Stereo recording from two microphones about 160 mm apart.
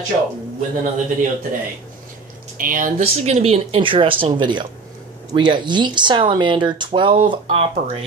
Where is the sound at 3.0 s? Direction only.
40° right (ahead or behind).